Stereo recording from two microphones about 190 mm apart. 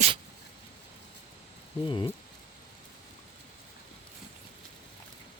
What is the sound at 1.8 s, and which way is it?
Speech, 25° left (ahead or behind).